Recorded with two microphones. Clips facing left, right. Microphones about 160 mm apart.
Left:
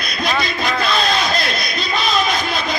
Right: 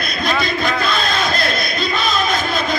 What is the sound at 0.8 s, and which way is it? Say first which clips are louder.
Crowd: left 1 dB; 50° right (ahead or behind).